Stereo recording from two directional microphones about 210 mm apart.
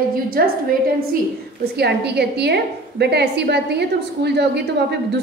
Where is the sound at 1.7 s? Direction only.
50° right (ahead or behind).